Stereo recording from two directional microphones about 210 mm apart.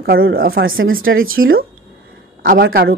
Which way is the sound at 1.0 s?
75° right (ahead or behind).